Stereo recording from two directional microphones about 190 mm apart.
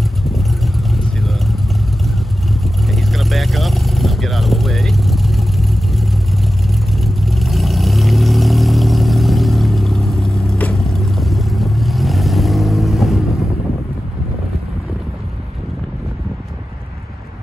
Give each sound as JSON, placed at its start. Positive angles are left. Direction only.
{"t": 0.2, "sound": "vehicle", "side_deg": 0}
{"t": 2.6, "sound": "vehicle", "side_deg": 0}